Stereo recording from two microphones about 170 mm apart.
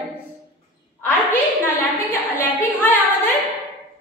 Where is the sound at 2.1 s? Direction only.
10° left (ahead or behind).